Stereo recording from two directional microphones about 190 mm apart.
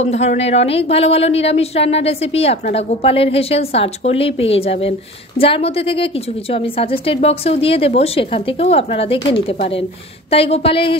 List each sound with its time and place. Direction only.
0.0 s a woman's voice: 35° left (ahead or behind)